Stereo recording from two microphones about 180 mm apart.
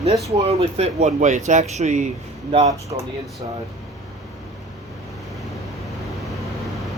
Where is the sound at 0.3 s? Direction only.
35° right (ahead or behind).